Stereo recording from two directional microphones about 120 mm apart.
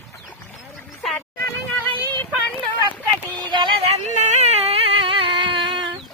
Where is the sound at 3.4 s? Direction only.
40° right (ahead or behind).